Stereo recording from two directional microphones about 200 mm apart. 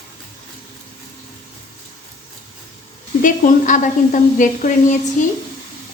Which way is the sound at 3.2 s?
40° left (ahead or behind).